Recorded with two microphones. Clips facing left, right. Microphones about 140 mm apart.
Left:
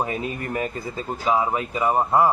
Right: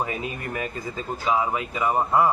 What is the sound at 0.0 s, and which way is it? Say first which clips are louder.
Speech: left 2 dB; 40° left (ahead or behind).